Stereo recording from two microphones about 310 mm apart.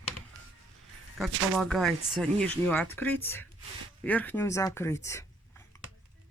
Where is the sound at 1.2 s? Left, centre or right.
Centre.